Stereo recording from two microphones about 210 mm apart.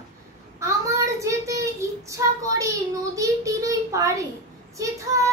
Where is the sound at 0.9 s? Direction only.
15° right (ahead or behind).